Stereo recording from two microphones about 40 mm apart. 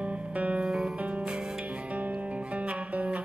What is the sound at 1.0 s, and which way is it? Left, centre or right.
Music, right.